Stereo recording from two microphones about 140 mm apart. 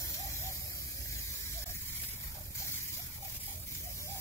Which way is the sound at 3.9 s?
20° left (ahead or behind).